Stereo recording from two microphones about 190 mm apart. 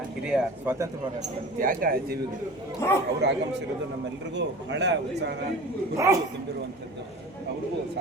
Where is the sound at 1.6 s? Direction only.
45° right (ahead or behind).